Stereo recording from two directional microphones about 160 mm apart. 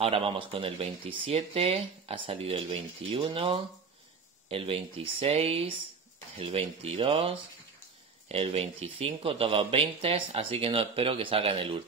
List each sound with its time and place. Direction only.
0.0 s speech: 35° right (ahead or behind)